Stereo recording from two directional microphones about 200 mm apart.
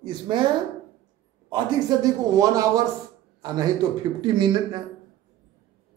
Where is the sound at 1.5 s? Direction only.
15° right (ahead or behind).